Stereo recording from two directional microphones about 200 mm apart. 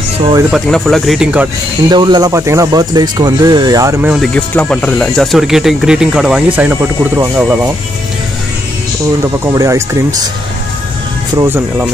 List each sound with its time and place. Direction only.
0.5 s speech: centre (ahead or behind)
1.9 s speech: 20° right (ahead or behind)
4.1 s speech: centre (ahead or behind)
9.5 s speech: 15° right (ahead or behind)
11.3 s speech: 10° right (ahead or behind)